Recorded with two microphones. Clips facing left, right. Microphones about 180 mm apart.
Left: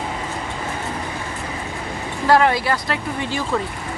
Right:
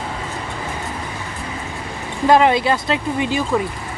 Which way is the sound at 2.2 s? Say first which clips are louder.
Right 3 dB; 20° right (ahead or behind).